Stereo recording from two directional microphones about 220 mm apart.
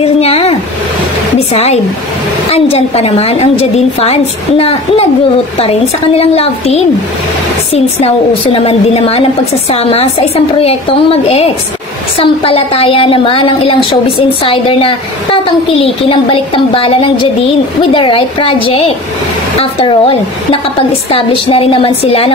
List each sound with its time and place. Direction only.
0.0 s a sound: 25° left (ahead or behind)
1.5 s a woman's voice: 30° left (ahead or behind)
8.5 s a woman's voice: 25° left (ahead or behind)